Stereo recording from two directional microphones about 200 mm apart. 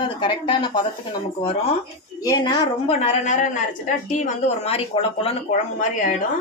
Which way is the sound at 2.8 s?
35° left (ahead or behind).